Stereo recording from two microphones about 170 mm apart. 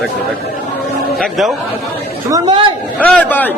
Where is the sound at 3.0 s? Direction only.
10° left (ahead or behind).